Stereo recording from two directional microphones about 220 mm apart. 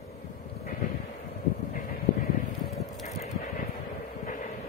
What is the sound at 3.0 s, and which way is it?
Vehicle, 35° left (ahead or behind).